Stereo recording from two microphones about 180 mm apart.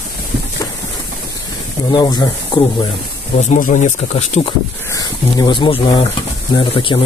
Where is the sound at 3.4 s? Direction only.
45° left (ahead or behind).